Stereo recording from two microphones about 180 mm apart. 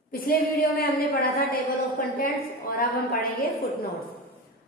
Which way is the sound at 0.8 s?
55° left (ahead or behind).